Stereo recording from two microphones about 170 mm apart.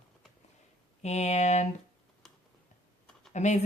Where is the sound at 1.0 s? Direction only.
40° left (ahead or behind).